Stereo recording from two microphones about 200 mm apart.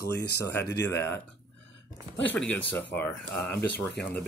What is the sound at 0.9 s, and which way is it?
Speech, 15° left (ahead or behind).